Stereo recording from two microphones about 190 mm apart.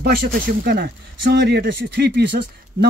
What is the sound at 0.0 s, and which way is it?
Speech, 55° right (ahead or behind).